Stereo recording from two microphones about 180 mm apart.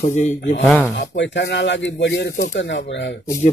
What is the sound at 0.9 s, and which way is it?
Speech, 75° left (ahead or behind).